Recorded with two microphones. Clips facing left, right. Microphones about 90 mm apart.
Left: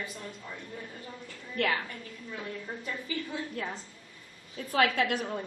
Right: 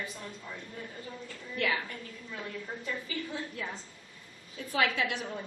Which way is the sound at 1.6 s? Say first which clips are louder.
Left 2 dB; 50° left (ahead or behind).